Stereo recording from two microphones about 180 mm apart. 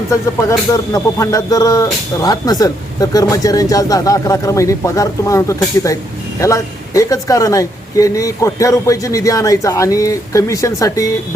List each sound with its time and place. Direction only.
0.1 s music: 15° left (ahead or behind)
6.4 s a man's voice: 15° left (ahead or behind)